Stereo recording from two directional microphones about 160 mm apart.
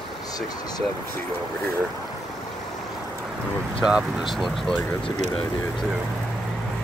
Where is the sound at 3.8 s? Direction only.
5° right (ahead or behind).